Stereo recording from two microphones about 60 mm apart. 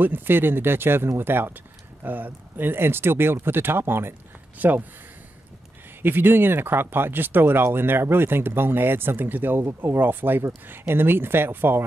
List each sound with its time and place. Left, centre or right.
0.0 s speech: right
6.0 s speech: right